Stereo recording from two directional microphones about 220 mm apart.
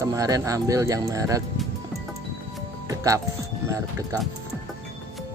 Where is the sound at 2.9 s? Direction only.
15° right (ahead or behind).